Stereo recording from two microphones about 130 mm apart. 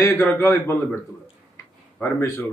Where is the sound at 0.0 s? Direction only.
20° left (ahead or behind).